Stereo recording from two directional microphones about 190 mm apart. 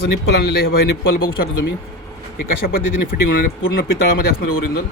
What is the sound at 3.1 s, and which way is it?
Speech, 45° left (ahead or behind).